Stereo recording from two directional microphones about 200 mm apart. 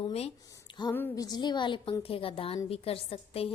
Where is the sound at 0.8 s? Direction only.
15° left (ahead or behind).